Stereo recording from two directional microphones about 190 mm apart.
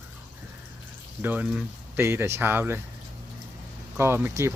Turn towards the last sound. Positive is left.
turn(degrees=-15)  # may be behind; listen again after turning